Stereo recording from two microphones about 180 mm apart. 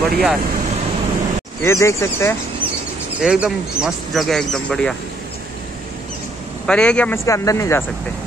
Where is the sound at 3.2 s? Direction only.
5° right (ahead or behind).